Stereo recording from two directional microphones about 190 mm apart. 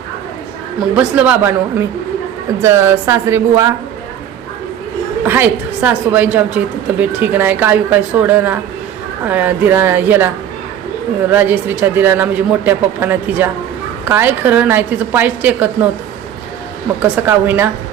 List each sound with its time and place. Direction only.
0.9 s speech: 10° right (ahead or behind)
2.6 s speech: 15° right (ahead or behind)
5.2 s speech: 10° right (ahead or behind)
17.0 s speech: 10° right (ahead or behind)